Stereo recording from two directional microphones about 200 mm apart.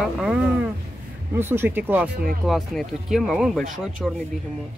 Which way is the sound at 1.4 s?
10° right (ahead or behind).